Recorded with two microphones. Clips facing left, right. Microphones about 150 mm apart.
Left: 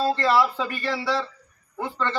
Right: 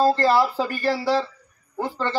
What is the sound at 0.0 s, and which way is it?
A man's voice, 35° right (ahead or behind).